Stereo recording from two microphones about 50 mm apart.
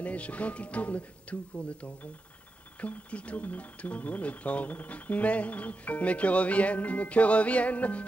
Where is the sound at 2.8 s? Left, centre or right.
Left.